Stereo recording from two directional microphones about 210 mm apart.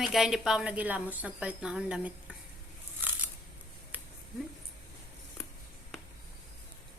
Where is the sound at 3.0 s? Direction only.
10° right (ahead or behind).